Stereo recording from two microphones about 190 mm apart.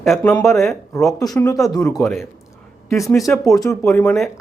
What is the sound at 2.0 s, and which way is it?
Speech, centre (ahead or behind).